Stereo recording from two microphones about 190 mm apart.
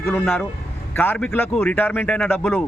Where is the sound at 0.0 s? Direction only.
5° left (ahead or behind).